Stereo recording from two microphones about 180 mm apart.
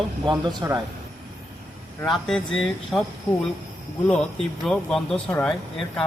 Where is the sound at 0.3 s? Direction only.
25° right (ahead or behind).